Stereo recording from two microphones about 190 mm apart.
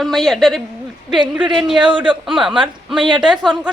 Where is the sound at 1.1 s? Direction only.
25° right (ahead or behind).